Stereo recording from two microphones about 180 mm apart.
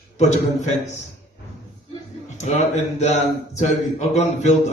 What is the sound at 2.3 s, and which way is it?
Speech, 40° left (ahead or behind).